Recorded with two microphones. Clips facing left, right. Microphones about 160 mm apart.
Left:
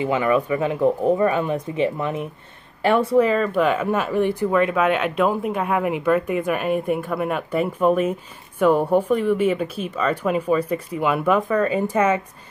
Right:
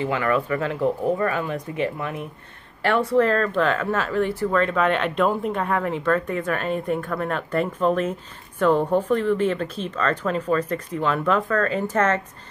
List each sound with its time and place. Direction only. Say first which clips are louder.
0.0 s speech: left 3 dB; 15° left (ahead or behind)